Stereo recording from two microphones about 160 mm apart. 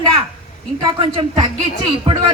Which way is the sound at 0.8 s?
25° right (ahead or behind).